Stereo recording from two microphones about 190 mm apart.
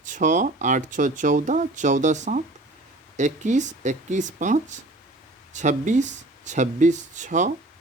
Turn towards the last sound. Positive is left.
turn(degrees=-40)  # may be behind; listen again after turning